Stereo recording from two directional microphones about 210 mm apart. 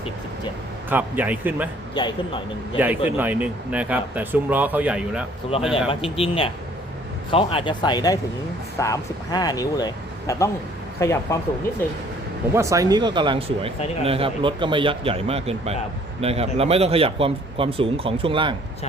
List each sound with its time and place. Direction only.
0.9 s speech: 10° right (ahead or behind)
2.0 s speech: 20° left (ahead or behind)
2.7 s speech: 10° right (ahead or behind)
5.9 s speech: 25° left (ahead or behind)
12.5 s speech: 15° right (ahead or behind)